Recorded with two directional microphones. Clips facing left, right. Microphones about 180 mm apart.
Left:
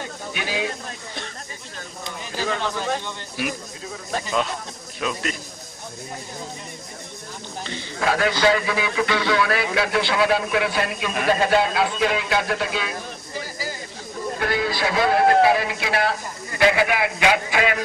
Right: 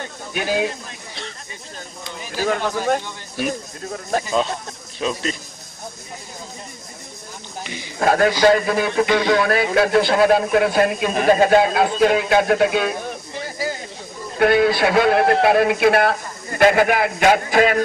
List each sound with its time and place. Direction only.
0.3 s speech: 45° right (ahead or behind)
2.4 s speech: 50° right (ahead or behind)
5.0 s a man's voice: 25° right (ahead or behind)
8.0 s a man's voice: 45° right (ahead or behind)